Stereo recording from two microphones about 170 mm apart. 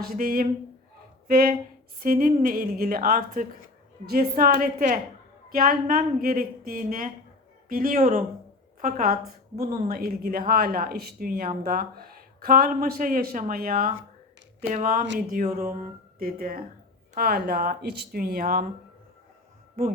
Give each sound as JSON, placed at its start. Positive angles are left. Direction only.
{"t": 0.0, "sound": "speech", "side_deg": -60}